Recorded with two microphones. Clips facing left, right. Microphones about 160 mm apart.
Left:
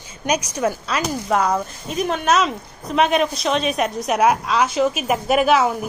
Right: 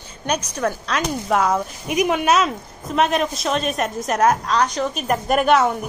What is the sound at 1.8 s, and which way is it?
Speech, 15° right (ahead or behind).